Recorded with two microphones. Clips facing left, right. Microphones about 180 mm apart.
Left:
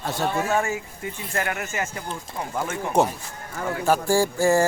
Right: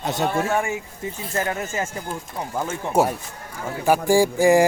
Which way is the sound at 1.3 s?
25° right (ahead or behind).